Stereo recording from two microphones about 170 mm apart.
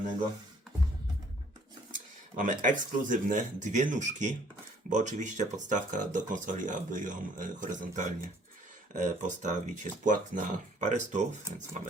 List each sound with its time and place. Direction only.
1.9 s speech: 50° right (ahead or behind)